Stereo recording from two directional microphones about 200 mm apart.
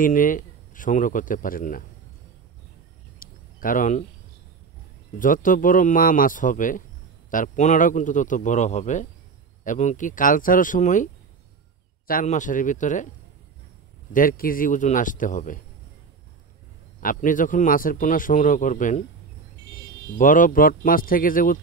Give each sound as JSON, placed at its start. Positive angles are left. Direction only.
{"t": 0.0, "sound": "a man's voice", "side_deg": 40}
{"t": 3.2, "sound": "a sound", "side_deg": 45}
{"t": 5.2, "sound": "a man's voice", "side_deg": 45}
{"t": 12.1, "sound": "a man's voice", "side_deg": 40}
{"t": 14.1, "sound": "a man's voice", "side_deg": 45}
{"t": 17.0, "sound": "a man's voice", "side_deg": 40}
{"t": 20.2, "sound": "speech", "side_deg": 40}